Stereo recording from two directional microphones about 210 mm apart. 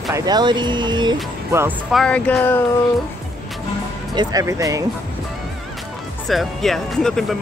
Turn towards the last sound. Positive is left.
turn(degrees=0)  # may be behind; listen again after turning